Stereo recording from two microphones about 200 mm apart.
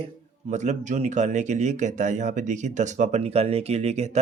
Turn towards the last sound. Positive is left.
turn(degrees=-35)  # may be behind; listen again after turning